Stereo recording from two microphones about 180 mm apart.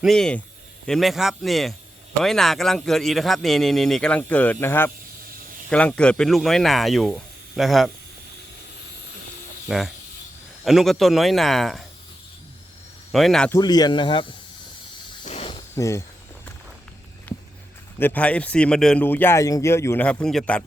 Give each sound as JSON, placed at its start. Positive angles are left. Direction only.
{"t": 0.0, "sound": "a man's voice", "side_deg": 0}
{"t": 9.6, "sound": "a man's voice", "side_deg": 0}
{"t": 13.1, "sound": "speech", "side_deg": 0}
{"t": 13.5, "sound": "speech", "side_deg": 20}
{"t": 15.2, "sound": "snake", "side_deg": 35}
{"t": 15.7, "sound": "speech", "side_deg": 15}
{"t": 17.3, "sound": "a sound", "side_deg": 10}
{"t": 18.0, "sound": "speech", "side_deg": 10}